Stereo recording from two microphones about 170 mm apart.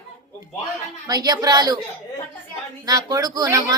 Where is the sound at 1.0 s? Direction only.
20° right (ahead or behind).